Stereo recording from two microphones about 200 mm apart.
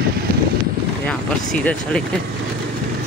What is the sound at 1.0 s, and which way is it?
Speech, 5° left (ahead or behind).